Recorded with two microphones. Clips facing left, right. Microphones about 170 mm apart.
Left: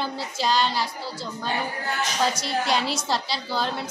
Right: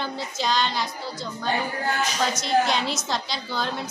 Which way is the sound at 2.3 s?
35° left (ahead or behind).